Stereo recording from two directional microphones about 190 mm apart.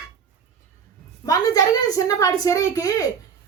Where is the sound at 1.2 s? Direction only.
20° left (ahead or behind).